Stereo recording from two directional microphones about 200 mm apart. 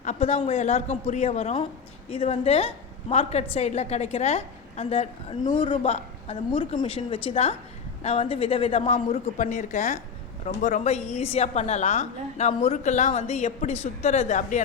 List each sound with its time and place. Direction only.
0.0 s a woman's voice: 35° left (ahead or behind)
5.5 s a woman's voice: 25° left (ahead or behind)